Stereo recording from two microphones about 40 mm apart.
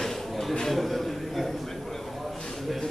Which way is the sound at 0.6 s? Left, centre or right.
Centre.